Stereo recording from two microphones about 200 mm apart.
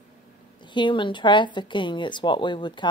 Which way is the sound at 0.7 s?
25° left (ahead or behind).